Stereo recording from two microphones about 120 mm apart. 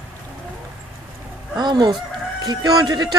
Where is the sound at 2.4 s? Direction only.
35° right (ahead or behind).